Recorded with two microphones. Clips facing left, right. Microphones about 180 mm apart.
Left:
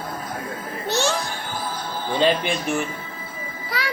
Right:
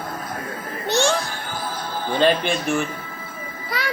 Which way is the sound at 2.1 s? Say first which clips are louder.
Right 1 dB; 15° left (ahead or behind).